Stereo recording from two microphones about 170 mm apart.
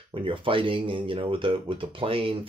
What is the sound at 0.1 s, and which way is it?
Speech, 30° right (ahead or behind).